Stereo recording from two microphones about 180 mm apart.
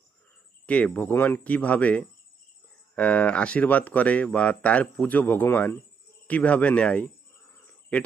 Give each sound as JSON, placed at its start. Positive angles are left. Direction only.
{"t": 0.7, "sound": "speech", "side_deg": 5}